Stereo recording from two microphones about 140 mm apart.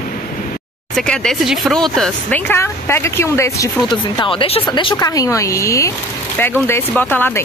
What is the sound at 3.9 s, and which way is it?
Speech, 35° left (ahead or behind).